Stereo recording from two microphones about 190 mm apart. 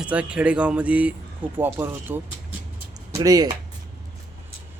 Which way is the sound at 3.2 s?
20° right (ahead or behind).